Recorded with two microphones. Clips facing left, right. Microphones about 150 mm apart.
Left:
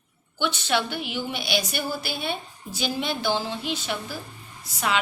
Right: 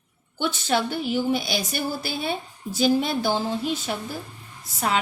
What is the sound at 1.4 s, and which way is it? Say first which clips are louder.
Speech: even; 60° left (ahead or behind).